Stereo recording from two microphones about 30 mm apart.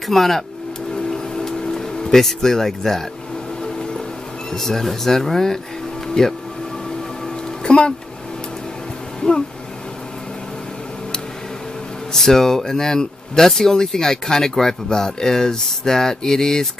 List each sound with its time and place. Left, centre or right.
0.1 s speech: centre
1.3 s vehicle: left
2.1 s speech: centre
4.6 s speech: centre
7.6 s music: left
12.1 s speech: centre